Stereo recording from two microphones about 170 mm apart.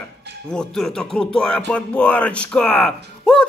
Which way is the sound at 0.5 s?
5° left (ahead or behind).